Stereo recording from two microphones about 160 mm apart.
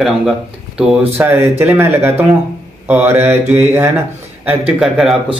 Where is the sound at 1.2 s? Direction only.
15° right (ahead or behind).